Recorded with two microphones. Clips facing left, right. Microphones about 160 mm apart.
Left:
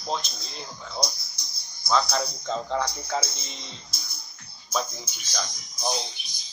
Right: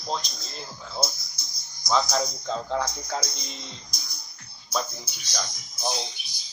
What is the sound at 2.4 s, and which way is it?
Speech, 10° right (ahead or behind).